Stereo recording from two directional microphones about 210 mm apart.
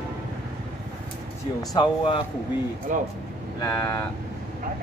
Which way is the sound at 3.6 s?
15° left (ahead or behind).